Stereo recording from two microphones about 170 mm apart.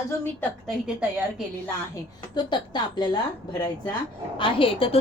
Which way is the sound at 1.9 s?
25° left (ahead or behind).